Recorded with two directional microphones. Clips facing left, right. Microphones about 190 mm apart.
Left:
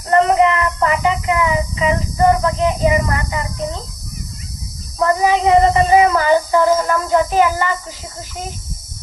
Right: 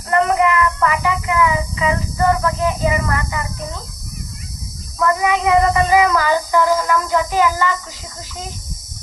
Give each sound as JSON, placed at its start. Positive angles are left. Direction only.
{"t": 0.1, "sound": "child singing", "side_deg": 30}
{"t": 4.9, "sound": "child singing", "side_deg": 30}
{"t": 6.8, "sound": "speech", "side_deg": 25}